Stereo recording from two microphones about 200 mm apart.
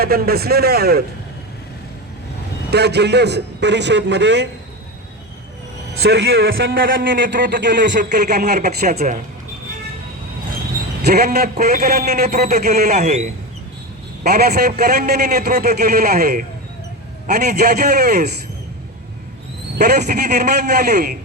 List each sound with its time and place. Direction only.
0.0 s a man's voice: 50° right (ahead or behind)
2.6 s a man's voice: 55° right (ahead or behind)
6.0 s a man's voice: 55° right (ahead or behind)
7.9 s a man's voice: 50° right (ahead or behind)
8.5 s speech: 40° right (ahead or behind)
11.0 s a man's voice: 50° right (ahead or behind); by 13.3 s 35° right (ahead or behind)
14.3 s a man's voice: 50° right (ahead or behind)
19.8 s a man's voice: 55° right (ahead or behind)